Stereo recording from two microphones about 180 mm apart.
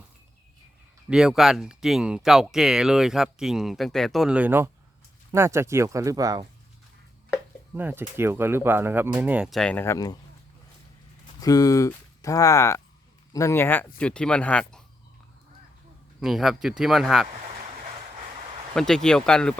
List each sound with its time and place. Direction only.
1.1 s speech: 5° right (ahead or behind); by 6.4 s 20° right (ahead or behind)
7.8 s speech: 10° right (ahead or behind); by 10.2 s 20° left (ahead or behind)
11.3 s speech: 20° left (ahead or behind); by 14.8 s 5° left (ahead or behind)
16.2 s speech: centre (ahead or behind)
18.7 s speech: 5° left (ahead or behind)